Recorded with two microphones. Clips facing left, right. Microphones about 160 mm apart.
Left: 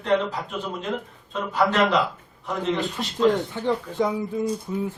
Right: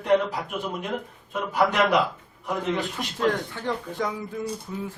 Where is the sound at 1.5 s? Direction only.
15° right (ahead or behind).